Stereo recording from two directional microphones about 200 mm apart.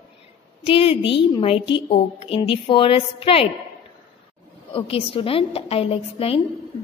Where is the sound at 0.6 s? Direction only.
25° left (ahead or behind).